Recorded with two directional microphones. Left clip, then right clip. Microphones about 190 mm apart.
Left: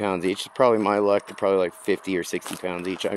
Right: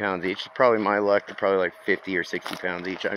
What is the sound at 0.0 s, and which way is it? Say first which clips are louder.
Speech: left 2 dB; 35° left (ahead or behind).